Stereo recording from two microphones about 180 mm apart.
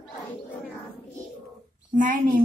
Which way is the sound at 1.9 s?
45° right (ahead or behind).